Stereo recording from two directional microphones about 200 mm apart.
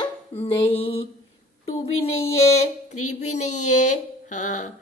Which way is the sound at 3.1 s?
35° left (ahead or behind).